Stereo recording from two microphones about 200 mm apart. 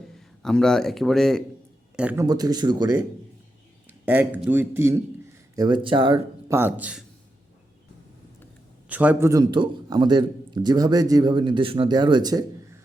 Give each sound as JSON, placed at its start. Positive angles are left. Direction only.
{"t": 0.2, "sound": "a man's voice", "side_deg": 0}
{"t": 2.2, "sound": "a man's voice", "side_deg": -20}
{"t": 3.8, "sound": "a sound", "side_deg": -5}
{"t": 4.4, "sound": "a man's voice", "side_deg": -10}
{"t": 5.5, "sound": "a man's voice", "side_deg": -20}
{"t": 6.5, "sound": "a man's voice", "side_deg": -10}
{"t": 8.9, "sound": "a man's voice", "side_deg": -5}